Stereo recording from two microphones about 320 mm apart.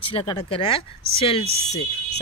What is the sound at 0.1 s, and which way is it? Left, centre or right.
Speech, centre.